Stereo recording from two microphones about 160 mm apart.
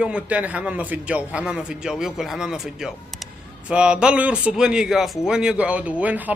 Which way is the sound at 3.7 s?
5° right (ahead or behind).